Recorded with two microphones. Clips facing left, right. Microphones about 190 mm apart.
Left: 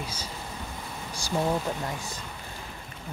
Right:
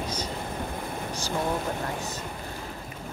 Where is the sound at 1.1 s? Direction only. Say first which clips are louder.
Right 3 dB; 10° left (ahead or behind).